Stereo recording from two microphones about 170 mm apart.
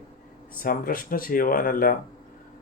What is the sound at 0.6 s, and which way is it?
Speech, 55° left (ahead or behind).